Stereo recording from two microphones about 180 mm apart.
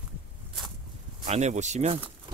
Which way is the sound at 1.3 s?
40° right (ahead or behind).